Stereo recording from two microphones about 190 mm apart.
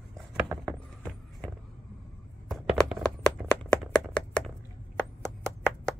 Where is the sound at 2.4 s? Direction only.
5° left (ahead or behind).